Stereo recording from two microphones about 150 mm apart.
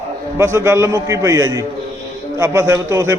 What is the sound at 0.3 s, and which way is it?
A man's voice, 15° right (ahead or behind).